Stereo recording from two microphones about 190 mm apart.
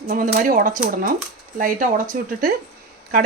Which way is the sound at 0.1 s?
45° right (ahead or behind).